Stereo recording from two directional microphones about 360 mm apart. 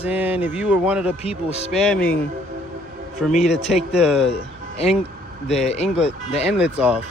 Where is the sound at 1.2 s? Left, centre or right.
Centre.